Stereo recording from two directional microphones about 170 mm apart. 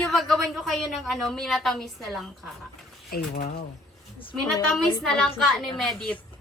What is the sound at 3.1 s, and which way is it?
Speech, 65° left (ahead or behind).